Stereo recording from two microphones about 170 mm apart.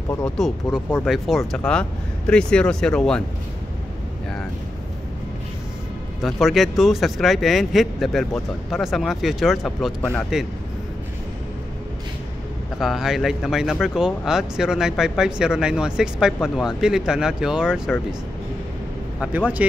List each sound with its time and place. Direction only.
0.4 s speech: 5° left (ahead or behind)
6.2 s speech: centre (ahead or behind)
12.7 s speech: centre (ahead or behind)
19.1 s speech: 10° right (ahead or behind)